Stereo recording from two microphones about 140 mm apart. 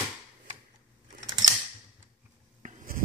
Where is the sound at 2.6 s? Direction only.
70° right (ahead or behind).